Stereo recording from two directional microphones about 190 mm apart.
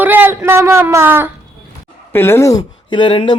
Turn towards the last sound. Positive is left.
turn(degrees=25)  # may be behind; listen again after turning